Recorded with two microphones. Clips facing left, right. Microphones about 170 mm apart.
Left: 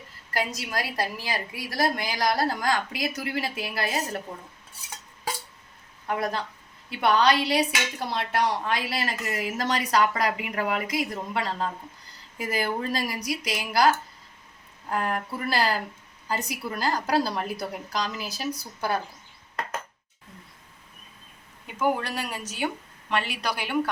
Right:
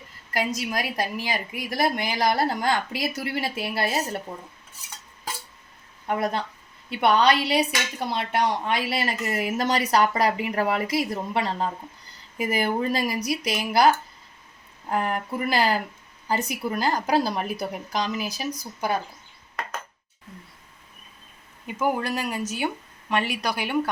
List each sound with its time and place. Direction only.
0.3 s speech: 20° right (ahead or behind)
6.1 s speech: 25° right (ahead or behind)
21.7 s speech: 5° right (ahead or behind)